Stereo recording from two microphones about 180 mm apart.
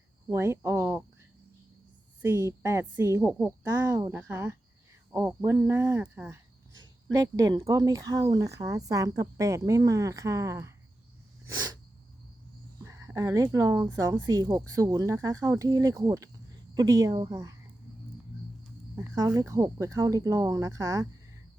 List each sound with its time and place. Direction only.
0.3 s a woman's voice: 15° right (ahead or behind)
2.2 s a woman's voice: 15° right (ahead or behind)
12.8 s a woman's voice: 15° right (ahead or behind)
18.9 s a woman's voice: 15° right (ahead or behind)